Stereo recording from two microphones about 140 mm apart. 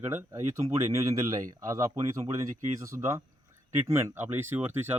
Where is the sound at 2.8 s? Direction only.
20° right (ahead or behind).